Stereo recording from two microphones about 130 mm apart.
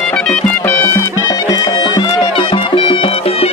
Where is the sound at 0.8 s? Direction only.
20° left (ahead or behind).